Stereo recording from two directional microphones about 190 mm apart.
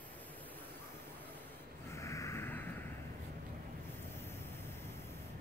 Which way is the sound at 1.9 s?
15° left (ahead or behind).